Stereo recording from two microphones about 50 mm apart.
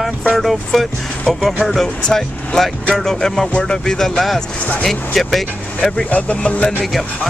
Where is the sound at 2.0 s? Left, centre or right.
Centre.